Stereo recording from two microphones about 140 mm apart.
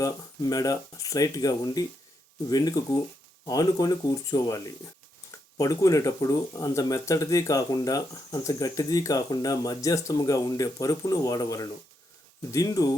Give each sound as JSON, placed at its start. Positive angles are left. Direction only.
{"t": 0.0, "sound": "speech", "side_deg": 25}